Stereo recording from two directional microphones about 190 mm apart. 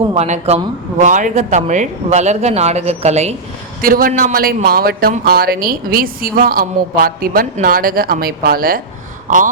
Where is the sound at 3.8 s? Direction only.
50° right (ahead or behind).